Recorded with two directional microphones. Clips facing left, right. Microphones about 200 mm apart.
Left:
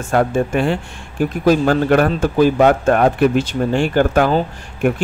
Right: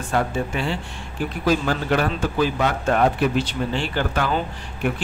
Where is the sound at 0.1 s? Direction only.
50° left (ahead or behind).